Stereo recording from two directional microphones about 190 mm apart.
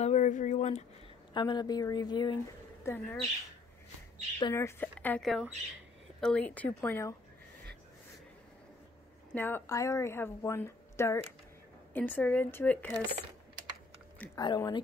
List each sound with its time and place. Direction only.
0.0 s a sound: 40° left (ahead or behind)
1.3 s a woman's voice: 25° left (ahead or behind)
4.4 s a woman's voice: 15° left (ahead or behind)
9.3 s a woman's voice: 10° left (ahead or behind)
14.4 s speech: 25° left (ahead or behind)